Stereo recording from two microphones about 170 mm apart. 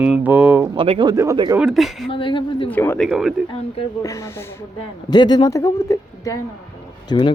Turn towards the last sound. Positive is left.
turn(degrees=25)  # may be behind; listen again after turning